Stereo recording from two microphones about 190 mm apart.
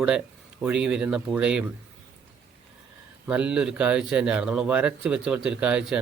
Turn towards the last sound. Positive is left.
turn(degrees=-5)  # may be behind; listen again after turning